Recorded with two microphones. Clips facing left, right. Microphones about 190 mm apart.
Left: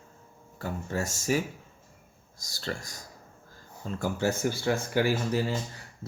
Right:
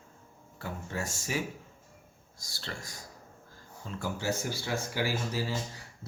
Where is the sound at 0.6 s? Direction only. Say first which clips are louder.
Left 5 dB; 40° left (ahead or behind).